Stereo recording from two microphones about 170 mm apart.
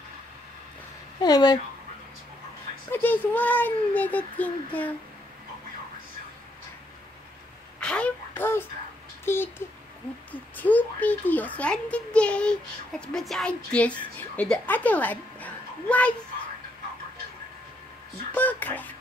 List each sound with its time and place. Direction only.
1.2 s speech: 25° left (ahead or behind)
2.9 s a child's voice: 10° left (ahead or behind)
7.8 s a sound: 5° left (ahead or behind)
9.2 s speech: 15° left (ahead or behind)
10.5 s a child's voice: 10° left (ahead or behind)
18.3 s a child's voice: 10° left (ahead or behind)